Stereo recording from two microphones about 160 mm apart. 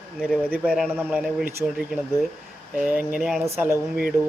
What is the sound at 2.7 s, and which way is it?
Speech, 5° right (ahead or behind).